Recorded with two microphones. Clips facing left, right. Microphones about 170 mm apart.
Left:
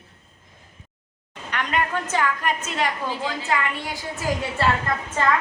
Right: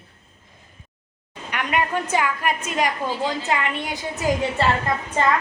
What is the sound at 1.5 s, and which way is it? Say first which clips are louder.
A woman's voice: right 1 dB; 10° right (ahead or behind).